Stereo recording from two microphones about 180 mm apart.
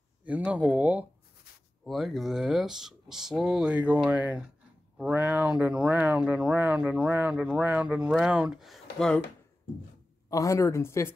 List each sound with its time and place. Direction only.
0.2 s speech: 10° right (ahead or behind)
10.3 s speech: 15° left (ahead or behind)